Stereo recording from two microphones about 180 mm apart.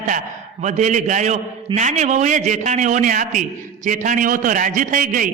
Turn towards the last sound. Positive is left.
turn(degrees=-50)  # may be behind; listen again after turning